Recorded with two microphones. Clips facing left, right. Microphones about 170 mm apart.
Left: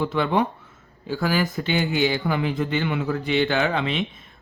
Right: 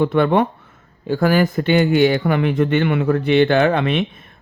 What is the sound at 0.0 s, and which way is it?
Speech, 60° right (ahead or behind).